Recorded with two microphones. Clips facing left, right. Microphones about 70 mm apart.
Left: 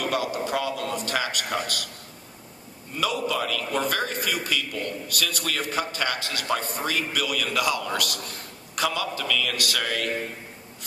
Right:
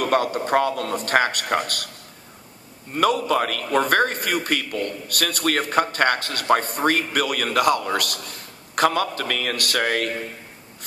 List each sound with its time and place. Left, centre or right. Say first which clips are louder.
0.0 s a man's voice: right 5 dB; right
2.9 s a man's voice: right 7 dB; right